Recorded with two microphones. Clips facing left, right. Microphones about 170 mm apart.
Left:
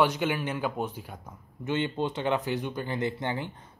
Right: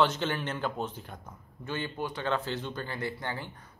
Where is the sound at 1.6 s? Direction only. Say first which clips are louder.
Left 6 dB; 20° left (ahead or behind).